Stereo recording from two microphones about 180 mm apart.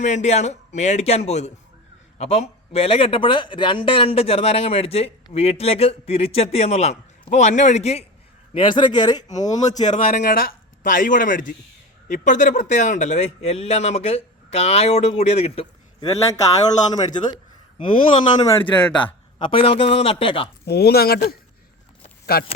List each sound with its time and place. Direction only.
0.0 s a man's voice: 40° left (ahead or behind)
8.5 s speech: 25° left (ahead or behind)
9.3 s a man's voice: 40° left (ahead or behind)
17.3 s a sound: 30° left (ahead or behind)
18.3 s speech: 20° left (ahead or behind)
18.9 s a man's voice: 10° left (ahead or behind)
19.4 s a man's voice: 30° left (ahead or behind)
20.7 s speech: 60° left (ahead or behind)